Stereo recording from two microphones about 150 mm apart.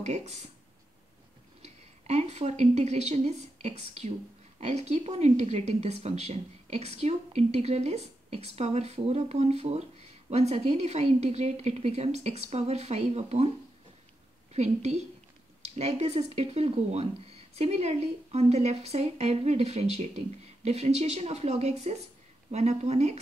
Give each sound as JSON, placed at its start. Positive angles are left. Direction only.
{"t": 0.0, "sound": "speech", "side_deg": -50}
{"t": 1.6, "sound": "speech", "side_deg": -45}
{"t": 14.5, "sound": "speech", "side_deg": -45}